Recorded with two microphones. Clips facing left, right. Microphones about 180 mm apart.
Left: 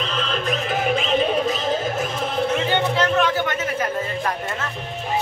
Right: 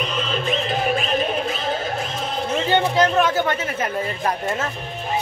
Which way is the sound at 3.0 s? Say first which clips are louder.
Right 2 dB; 40° right (ahead or behind).